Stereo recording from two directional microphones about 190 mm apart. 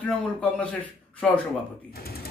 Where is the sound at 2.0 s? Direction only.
55° left (ahead or behind).